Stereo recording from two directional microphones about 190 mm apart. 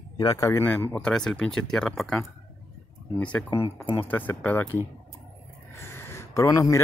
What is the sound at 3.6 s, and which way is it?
Speech, 30° left (ahead or behind).